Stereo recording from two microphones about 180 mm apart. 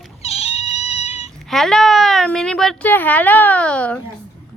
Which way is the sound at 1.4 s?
Centre (ahead or behind).